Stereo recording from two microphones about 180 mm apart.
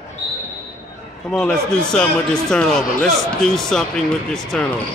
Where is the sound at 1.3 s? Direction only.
5° left (ahead or behind).